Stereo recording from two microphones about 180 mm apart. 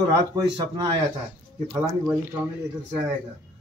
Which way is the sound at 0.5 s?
25° right (ahead or behind).